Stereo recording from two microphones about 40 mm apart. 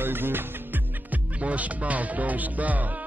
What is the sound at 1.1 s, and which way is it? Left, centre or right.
Music, right.